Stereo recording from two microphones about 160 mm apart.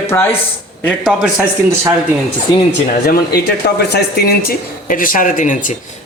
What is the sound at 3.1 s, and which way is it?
Speech, 85° left.